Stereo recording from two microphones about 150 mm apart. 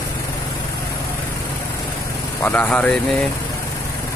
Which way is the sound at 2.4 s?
10° left (ahead or behind).